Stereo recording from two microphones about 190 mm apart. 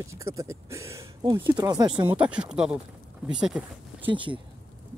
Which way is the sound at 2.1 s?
5° right (ahead or behind).